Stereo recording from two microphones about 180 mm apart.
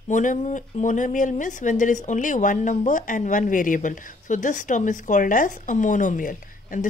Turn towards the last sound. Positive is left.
turn(degrees=50)  # may be behind; listen again after turning